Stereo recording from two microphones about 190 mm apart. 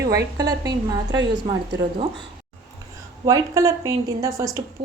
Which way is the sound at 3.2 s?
20° right (ahead or behind).